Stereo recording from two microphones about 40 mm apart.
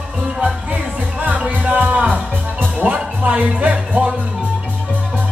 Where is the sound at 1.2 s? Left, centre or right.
Right.